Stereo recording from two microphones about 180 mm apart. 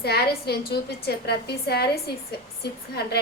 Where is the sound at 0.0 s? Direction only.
65° left (ahead or behind).